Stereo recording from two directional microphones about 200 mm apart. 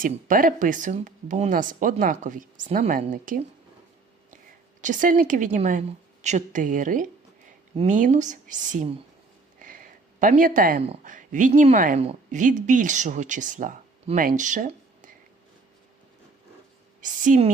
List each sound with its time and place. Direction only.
0.0 s speech: 45° right (ahead or behind)
4.8 s speech: 40° right (ahead or behind)
17.0 s speech: 40° right (ahead or behind)